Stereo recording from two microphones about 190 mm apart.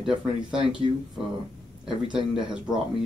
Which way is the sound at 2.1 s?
5° right (ahead or behind).